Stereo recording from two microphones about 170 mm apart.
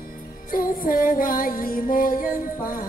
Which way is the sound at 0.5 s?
55° left (ahead or behind).